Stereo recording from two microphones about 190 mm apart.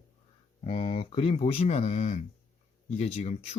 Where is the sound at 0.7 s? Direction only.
30° left (ahead or behind).